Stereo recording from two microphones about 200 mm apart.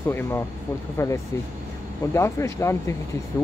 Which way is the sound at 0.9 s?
15° left (ahead or behind).